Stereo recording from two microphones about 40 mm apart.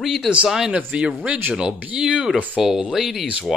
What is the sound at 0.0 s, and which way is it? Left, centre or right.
Speech, centre.